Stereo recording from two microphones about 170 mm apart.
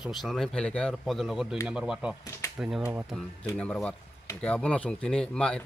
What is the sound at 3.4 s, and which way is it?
Speech, 5° left (ahead or behind).